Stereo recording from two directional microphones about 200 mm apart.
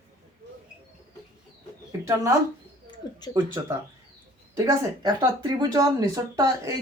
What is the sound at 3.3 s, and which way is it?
Speech, 15° right (ahead or behind).